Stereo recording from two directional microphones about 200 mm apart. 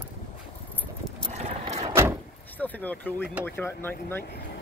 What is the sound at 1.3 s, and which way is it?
Ratchet, 30° right (ahead or behind).